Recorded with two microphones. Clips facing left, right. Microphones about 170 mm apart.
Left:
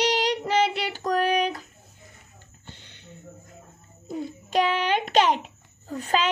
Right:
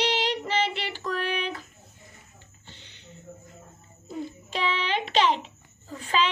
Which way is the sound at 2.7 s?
50° left (ahead or behind).